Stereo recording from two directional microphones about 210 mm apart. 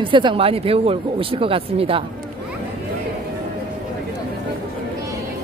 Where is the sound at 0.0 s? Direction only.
25° right (ahead or behind).